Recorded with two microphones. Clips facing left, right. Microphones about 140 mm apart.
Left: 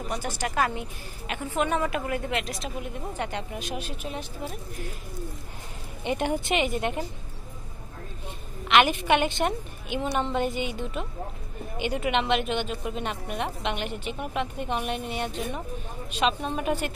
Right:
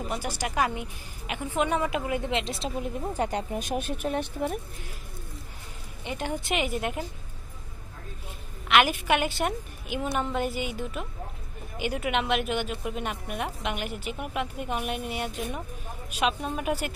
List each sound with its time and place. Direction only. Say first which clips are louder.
0.1 s a woman's voice: left 3 dB; 10° right (ahead or behind)
2.6 s a woman's voice: right 3 dB; 35° right (ahead or behind); by 4.6 s 60° right (ahead or behind)
6.0 s a woman's voice: left 6 dB; 20° left (ahead or behind)
6.4 s a woman's voice: left 2 dB; centre (ahead or behind)
8.6 s a woman's voice: left 2 dB; 5° right (ahead or behind)